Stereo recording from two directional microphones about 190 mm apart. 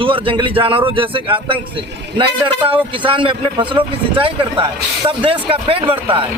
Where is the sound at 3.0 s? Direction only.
25° right (ahead or behind).